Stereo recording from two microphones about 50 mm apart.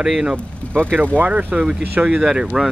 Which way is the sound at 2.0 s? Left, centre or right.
Right.